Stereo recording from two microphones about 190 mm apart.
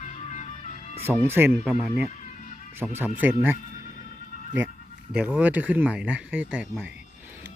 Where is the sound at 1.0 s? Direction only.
10° right (ahead or behind).